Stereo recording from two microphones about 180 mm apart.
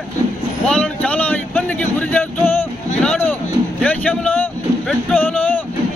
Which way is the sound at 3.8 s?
10° left (ahead or behind).